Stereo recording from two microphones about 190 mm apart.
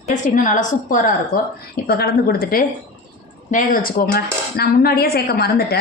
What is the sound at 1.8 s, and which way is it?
A woman's voice, 55° left (ahead or behind).